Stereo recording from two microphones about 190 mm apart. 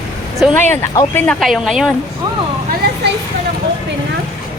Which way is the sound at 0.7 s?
10° left (ahead or behind).